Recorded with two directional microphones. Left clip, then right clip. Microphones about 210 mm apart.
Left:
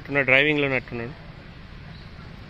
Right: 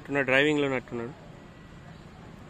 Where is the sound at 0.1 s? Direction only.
5° right (ahead or behind).